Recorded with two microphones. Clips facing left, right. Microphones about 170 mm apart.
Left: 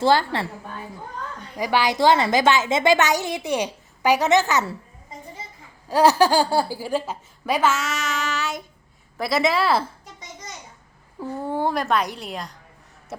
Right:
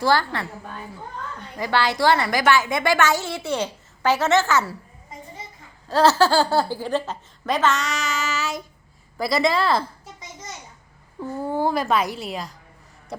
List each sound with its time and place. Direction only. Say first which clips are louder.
0.0 s a woman's voice: left 2 dB; 20° left (ahead or behind)
1.5 s a woman's voice: left 1 dB; 15° left (ahead or behind)
5.9 s a woman's voice: left 1 dB; 15° left (ahead or behind)
11.2 s speech: right 1 dB; centre (ahead or behind)